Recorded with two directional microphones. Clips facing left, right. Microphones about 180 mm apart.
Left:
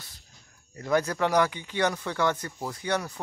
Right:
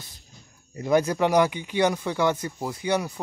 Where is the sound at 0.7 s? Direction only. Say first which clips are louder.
Right 4 dB; 15° right (ahead or behind).